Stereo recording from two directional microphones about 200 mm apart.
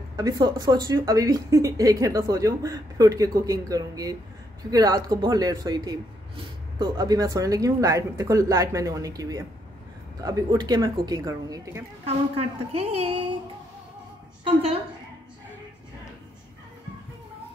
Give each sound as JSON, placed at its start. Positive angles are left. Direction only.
{"t": 0.1, "sound": "speech", "side_deg": -20}
{"t": 12.4, "sound": "a woman's voice", "side_deg": -30}